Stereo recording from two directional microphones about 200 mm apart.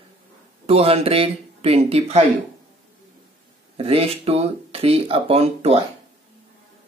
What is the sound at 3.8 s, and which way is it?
Speech, 30° right (ahead or behind).